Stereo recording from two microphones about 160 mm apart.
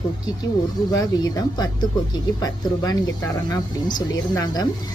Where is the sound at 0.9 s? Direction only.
25° left (ahead or behind).